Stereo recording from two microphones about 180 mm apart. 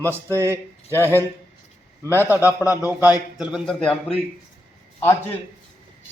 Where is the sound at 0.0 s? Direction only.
15° right (ahead or behind).